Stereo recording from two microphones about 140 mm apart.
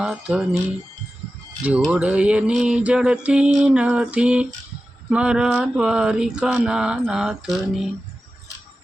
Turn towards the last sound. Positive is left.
turn(degrees=0)  # may be behind; listen again after turning